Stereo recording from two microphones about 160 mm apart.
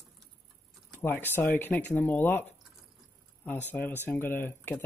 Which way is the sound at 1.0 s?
15° left (ahead or behind).